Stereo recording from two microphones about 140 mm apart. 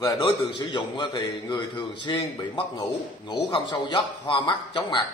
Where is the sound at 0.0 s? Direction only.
35° left (ahead or behind).